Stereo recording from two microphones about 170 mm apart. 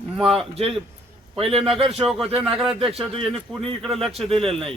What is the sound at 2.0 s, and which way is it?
A man's voice, centre (ahead or behind).